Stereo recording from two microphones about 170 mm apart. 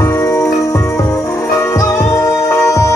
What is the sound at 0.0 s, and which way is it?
Music, 20° left (ahead or behind).